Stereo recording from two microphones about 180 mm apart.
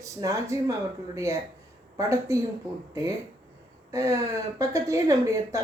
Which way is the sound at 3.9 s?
15° right (ahead or behind).